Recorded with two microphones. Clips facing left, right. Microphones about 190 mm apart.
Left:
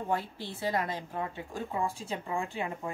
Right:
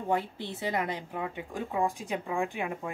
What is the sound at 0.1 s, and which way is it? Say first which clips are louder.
A woman's voice: right 5 dB; 20° right (ahead or behind).